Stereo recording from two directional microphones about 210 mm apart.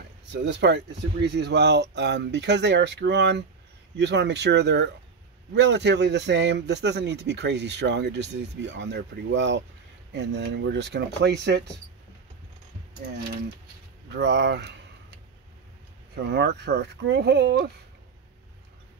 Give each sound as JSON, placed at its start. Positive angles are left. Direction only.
{"t": 0.3, "sound": "a man's voice", "side_deg": -55}
{"t": 14.1, "sound": "a man's voice", "side_deg": -55}
{"t": 16.3, "sound": "speech", "side_deg": -50}